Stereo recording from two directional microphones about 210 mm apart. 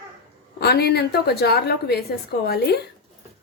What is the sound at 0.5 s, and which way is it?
A woman's voice, 50° left (ahead or behind).